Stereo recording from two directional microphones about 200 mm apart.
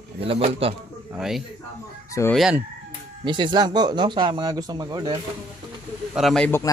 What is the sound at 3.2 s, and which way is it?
Speech, 25° right (ahead or behind).